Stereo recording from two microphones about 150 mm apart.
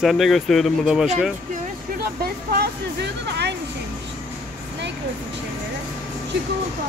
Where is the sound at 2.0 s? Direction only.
90° right.